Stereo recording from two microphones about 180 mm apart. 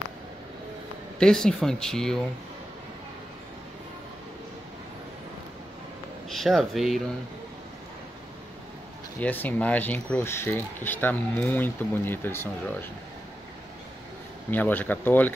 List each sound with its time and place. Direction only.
1.2 s speech: 5° left (ahead or behind)
6.2 s speech: centre (ahead or behind)
9.2 s speech: 10° left (ahead or behind)
14.5 s speech: 10° left (ahead or behind)